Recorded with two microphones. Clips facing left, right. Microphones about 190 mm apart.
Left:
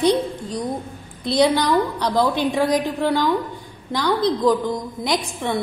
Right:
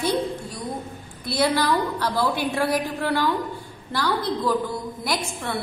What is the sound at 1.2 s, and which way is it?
A woman's voice, 20° left (ahead or behind).